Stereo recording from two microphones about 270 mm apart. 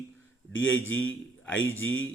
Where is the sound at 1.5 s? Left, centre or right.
Centre.